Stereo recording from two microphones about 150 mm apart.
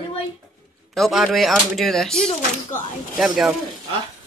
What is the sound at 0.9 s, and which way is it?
Speech, centre (ahead or behind).